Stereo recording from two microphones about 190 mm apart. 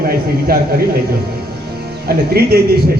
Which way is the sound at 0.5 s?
50° right (ahead or behind).